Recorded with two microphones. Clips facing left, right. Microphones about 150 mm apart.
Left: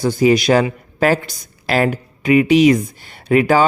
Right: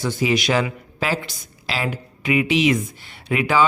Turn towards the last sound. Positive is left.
turn(degrees=45)  # may be behind; listen again after turning